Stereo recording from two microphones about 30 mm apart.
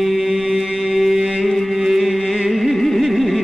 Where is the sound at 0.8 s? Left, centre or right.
Centre.